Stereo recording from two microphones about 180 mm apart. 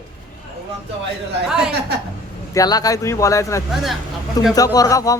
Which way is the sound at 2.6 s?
20° left (ahead or behind).